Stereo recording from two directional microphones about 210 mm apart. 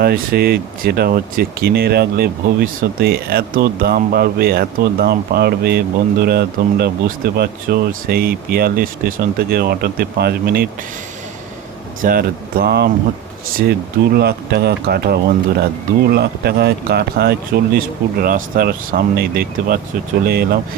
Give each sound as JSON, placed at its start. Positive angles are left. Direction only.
{"t": 0.0, "sound": "speech", "side_deg": -45}
{"t": 12.0, "sound": "speech", "side_deg": -45}